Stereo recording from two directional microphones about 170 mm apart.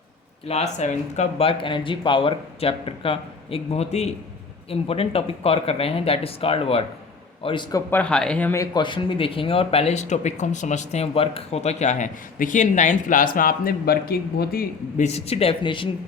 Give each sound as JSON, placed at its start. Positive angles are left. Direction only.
{"t": 0.4, "sound": "a man's voice", "side_deg": 40}
{"t": 7.9, "sound": "speech", "side_deg": 10}
{"t": 15.0, "sound": "speech", "side_deg": 40}